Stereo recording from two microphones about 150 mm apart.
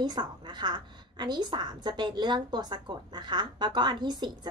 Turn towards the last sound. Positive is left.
turn(degrees=-30)  # may be behind; listen again after turning